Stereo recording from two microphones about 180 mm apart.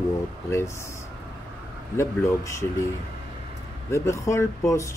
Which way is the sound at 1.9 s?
15° left (ahead or behind).